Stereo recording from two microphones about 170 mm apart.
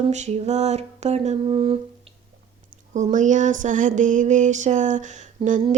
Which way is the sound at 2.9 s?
45° right (ahead or behind).